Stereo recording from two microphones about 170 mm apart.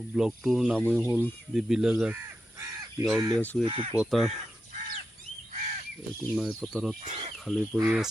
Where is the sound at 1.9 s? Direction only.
10° right (ahead or behind).